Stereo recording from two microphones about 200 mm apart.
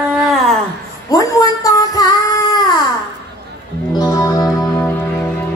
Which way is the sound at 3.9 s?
20° left (ahead or behind).